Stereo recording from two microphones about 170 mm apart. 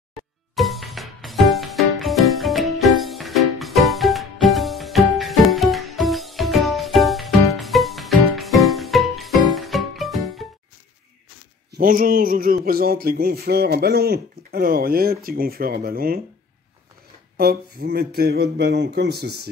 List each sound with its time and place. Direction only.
0.6 s music: centre (ahead or behind)
11.8 s a sound: 55° right (ahead or behind)
17.4 s speech: 65° right (ahead or behind)